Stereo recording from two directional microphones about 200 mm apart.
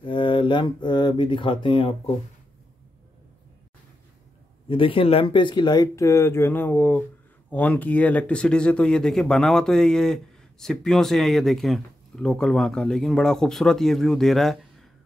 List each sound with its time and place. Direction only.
0.0 s speech: 25° left (ahead or behind)
4.6 s speech: 25° left (ahead or behind); by 14.9 s centre (ahead or behind)